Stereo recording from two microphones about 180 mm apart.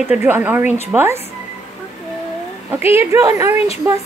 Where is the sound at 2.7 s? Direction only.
15° right (ahead or behind).